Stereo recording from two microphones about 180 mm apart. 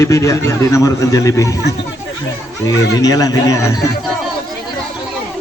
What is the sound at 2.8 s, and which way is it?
Speech, 20° left (ahead or behind).